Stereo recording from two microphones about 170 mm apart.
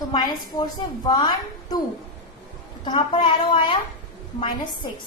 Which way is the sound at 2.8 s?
30° left (ahead or behind).